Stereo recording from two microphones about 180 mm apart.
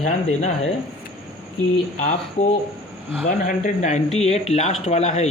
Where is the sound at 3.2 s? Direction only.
45° left (ahead or behind).